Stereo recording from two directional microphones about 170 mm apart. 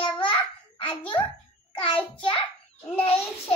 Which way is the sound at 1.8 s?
30° left (ahead or behind).